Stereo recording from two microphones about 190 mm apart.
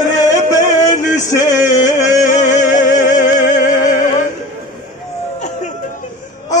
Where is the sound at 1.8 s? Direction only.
40° left (ahead or behind).